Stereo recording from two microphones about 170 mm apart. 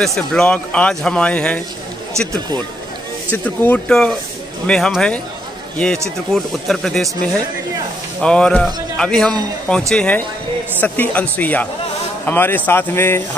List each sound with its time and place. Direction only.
0.0 s speech: 5° left (ahead or behind)
2.1 s speech: 15° right (ahead or behind)
3.4 s a man's voice: 10° left (ahead or behind)